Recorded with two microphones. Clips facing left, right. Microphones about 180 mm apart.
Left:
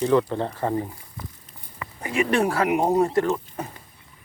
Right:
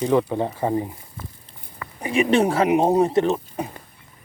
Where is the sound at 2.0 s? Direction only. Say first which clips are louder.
Right 4 dB; 15° right (ahead or behind).